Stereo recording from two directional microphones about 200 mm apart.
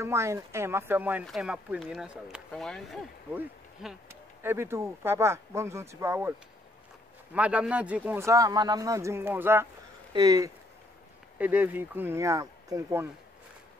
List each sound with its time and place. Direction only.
0.0 s speech: 15° right (ahead or behind); by 3.0 s centre (ahead or behind)
3.3 s speech: 10° right (ahead or behind)
7.3 s speech: 5° right (ahead or behind)